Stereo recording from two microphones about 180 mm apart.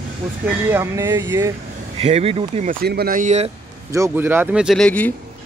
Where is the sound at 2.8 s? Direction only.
60° right (ahead or behind); by 3.4 s 45° right (ahead or behind).